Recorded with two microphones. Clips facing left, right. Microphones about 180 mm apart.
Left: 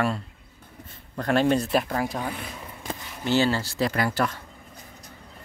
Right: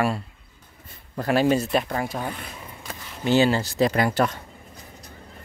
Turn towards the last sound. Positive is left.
turn(degrees=-20)  # may be behind; listen again after turning